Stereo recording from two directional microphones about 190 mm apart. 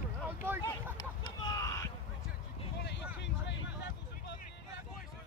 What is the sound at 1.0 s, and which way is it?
Vehicle, 20° left (ahead or behind).